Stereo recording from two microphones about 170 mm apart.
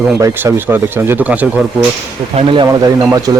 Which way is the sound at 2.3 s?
30° right (ahead or behind).